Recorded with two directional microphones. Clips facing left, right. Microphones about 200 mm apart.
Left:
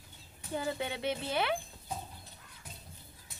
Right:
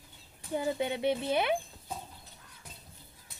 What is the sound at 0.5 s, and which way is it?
Speech, 20° right (ahead or behind).